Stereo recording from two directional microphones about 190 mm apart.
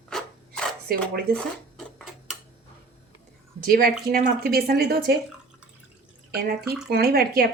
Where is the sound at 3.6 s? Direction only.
50° right (ahead or behind).